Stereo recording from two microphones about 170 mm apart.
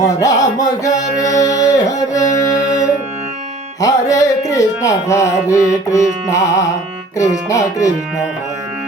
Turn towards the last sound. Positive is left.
turn(degrees=20)  # may be behind; listen again after turning